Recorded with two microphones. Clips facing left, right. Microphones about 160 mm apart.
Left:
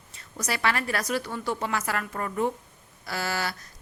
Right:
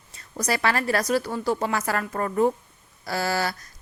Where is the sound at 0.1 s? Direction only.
35° right (ahead or behind).